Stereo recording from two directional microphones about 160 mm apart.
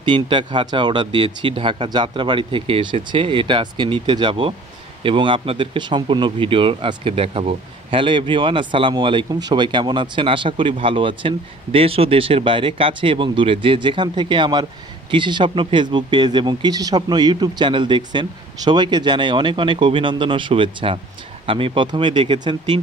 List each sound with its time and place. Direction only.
0.0 s speech: 30° right (ahead or behind)